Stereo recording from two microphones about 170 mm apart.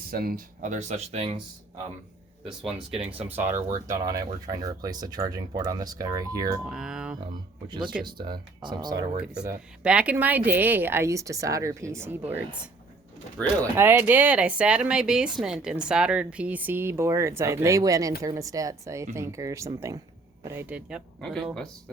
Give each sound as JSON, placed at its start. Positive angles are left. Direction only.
{"t": 0.1, "sound": "speech", "side_deg": -60}
{"t": 2.6, "sound": "speech", "side_deg": -5}
{"t": 6.7, "sound": "speech", "side_deg": -5}
{"t": 8.0, "sound": "speech", "side_deg": -25}
{"t": 9.1, "sound": "a woman's voice", "side_deg": -5}
{"t": 13.7, "sound": "a woman's voice", "side_deg": -15}
{"t": 21.2, "sound": "speech", "side_deg": 0}